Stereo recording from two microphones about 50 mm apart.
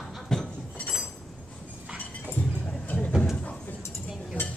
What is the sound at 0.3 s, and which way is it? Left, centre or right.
Cutlery, centre.